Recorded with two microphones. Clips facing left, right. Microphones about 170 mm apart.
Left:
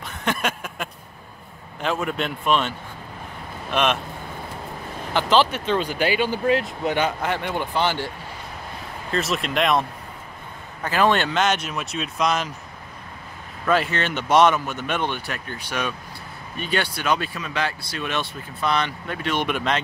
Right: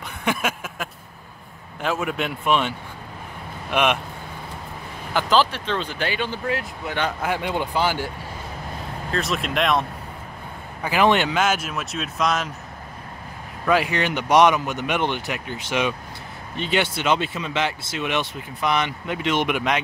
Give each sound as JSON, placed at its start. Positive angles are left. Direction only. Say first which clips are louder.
{"t": 0.2, "sound": "a sound", "louder": "right 1 dB", "side_deg": -10}
{"t": 1.8, "sound": "speech", "louder": "even", "side_deg": -5}
{"t": 3.7, "sound": "speech", "louder": "right 1 dB", "side_deg": -10}
{"t": 5.5, "sound": "speech", "louder": "left 4 dB", "side_deg": 10}
{"t": 6.4, "sound": "speech", "louder": "left 6 dB", "side_deg": 20}
{"t": 7.2, "sound": "speech", "louder": "right 1 dB", "side_deg": -10}
{"t": 9.1, "sound": "speech", "louder": "left 1 dB", "side_deg": 0}
{"t": 10.8, "sound": "speech", "louder": "right 1 dB", "side_deg": -15}
{"t": 13.7, "sound": "speech", "louder": "right 1 dB", "side_deg": -15}